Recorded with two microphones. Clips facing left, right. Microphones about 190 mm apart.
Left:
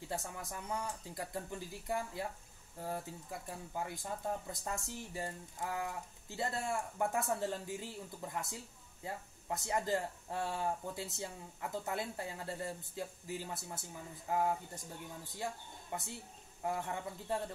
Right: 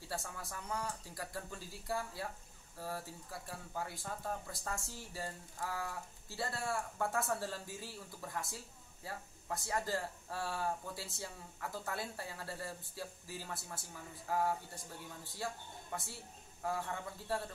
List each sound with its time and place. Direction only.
0.1 s speech: 20° left (ahead or behind)
15.9 s speech: 20° left (ahead or behind)